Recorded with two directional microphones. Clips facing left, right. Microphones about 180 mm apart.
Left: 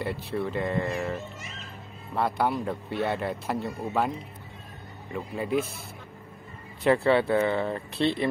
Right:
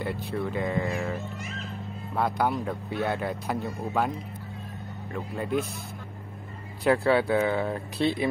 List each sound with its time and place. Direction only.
0.0 s speech: centre (ahead or behind)
2.1 s speech: centre (ahead or behind)
5.1 s speech: centre (ahead or behind)
6.8 s speech: centre (ahead or behind)